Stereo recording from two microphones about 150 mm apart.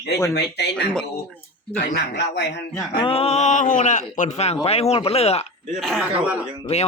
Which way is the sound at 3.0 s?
40° left (ahead or behind).